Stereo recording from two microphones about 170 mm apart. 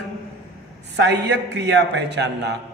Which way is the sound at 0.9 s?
85° right.